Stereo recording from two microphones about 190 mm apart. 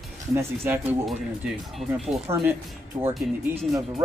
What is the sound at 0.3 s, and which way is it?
Speech, 10° right (ahead or behind).